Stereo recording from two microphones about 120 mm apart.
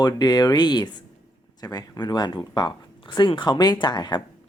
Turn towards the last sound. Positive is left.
turn(degrees=35)  # may be behind; listen again after turning